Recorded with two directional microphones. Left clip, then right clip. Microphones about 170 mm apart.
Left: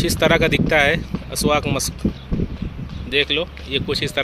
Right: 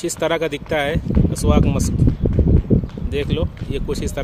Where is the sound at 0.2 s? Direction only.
5° right (ahead or behind).